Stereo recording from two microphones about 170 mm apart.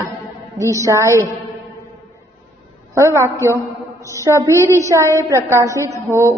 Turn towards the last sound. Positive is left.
turn(degrees=-15)  # may be behind; listen again after turning